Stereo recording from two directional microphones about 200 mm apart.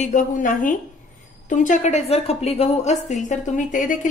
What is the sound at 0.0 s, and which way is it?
A woman's voice, 40° left (ahead or behind).